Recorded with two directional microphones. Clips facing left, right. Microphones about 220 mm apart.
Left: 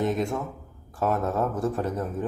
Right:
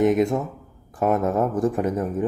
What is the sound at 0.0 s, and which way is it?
Speech, 20° right (ahead or behind).